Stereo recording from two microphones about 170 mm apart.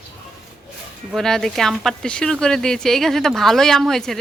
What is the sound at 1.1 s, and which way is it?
A woman's voice, centre (ahead or behind).